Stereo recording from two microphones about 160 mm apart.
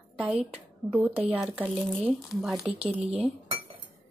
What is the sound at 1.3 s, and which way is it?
Speech, 10° right (ahead or behind).